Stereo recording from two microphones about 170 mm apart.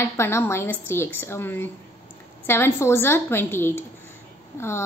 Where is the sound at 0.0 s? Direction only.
15° left (ahead or behind).